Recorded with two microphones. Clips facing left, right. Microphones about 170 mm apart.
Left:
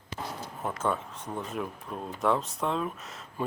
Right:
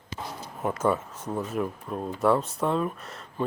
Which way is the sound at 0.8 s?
5° right (ahead or behind).